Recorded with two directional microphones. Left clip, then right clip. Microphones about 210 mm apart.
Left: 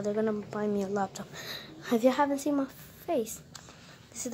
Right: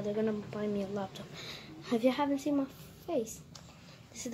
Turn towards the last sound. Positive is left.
turn(degrees=10)  # may be behind; listen again after turning